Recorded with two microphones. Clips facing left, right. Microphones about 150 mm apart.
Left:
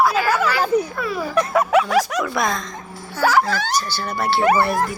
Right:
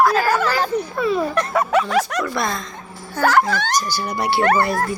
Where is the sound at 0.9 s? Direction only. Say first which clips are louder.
Right 5 dB; 25° right (ahead or behind).